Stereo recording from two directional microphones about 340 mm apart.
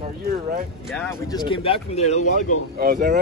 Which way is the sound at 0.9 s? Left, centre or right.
Centre.